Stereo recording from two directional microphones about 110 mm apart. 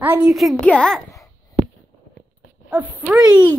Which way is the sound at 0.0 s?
15° right (ahead or behind).